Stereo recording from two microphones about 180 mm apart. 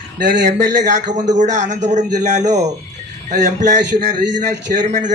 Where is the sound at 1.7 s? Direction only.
40° right (ahead or behind).